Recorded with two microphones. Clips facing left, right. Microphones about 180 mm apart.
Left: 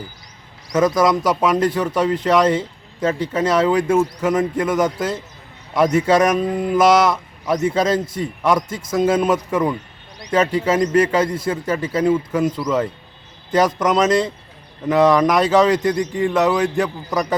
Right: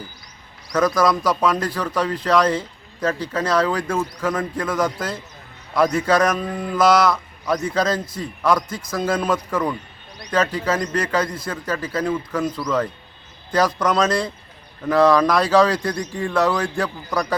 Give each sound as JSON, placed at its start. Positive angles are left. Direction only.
{"t": 0.7, "sound": "speech", "side_deg": 20}
{"t": 13.5, "sound": "speech", "side_deg": 20}